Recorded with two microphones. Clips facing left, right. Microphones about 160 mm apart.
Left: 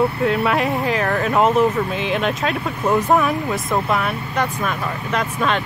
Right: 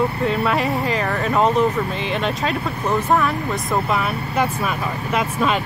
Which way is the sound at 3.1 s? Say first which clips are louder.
Even; 20° left (ahead or behind).